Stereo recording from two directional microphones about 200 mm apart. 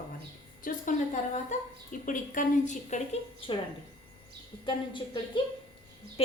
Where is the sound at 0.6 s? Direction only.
40° left (ahead or behind).